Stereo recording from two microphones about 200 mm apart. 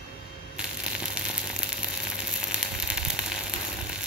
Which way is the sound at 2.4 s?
5° right (ahead or behind).